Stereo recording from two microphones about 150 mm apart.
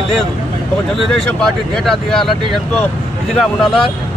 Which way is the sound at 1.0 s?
5° left (ahead or behind).